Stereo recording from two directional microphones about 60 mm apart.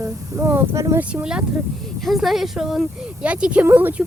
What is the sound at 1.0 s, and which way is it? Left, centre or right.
Speech, right.